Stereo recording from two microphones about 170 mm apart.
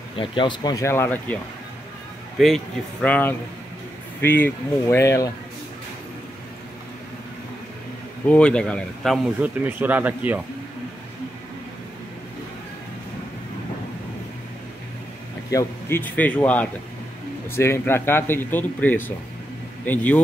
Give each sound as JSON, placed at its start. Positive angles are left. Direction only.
{"t": 0.2, "sound": "speech", "side_deg": 30}
{"t": 8.3, "sound": "speech", "side_deg": 5}
{"t": 15.5, "sound": "speech", "side_deg": 10}